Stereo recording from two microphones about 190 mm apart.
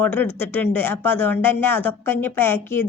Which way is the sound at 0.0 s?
10° left (ahead or behind).